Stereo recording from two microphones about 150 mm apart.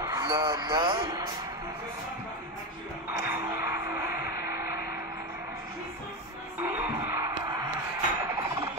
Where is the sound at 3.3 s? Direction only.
20° right (ahead or behind).